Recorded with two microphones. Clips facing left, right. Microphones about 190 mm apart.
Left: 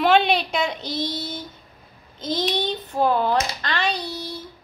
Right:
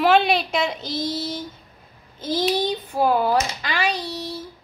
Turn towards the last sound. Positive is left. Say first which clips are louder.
# right 1 dB
turn(degrees=-5)  # may be behind; listen again after turning